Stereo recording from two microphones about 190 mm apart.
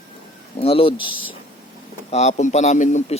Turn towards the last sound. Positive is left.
turn(degrees=40)  # may be behind; listen again after turning